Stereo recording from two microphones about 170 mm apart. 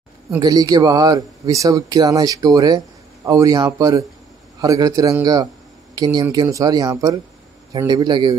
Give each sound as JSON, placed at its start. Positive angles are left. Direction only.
{"t": 0.4, "sound": "speech", "side_deg": -20}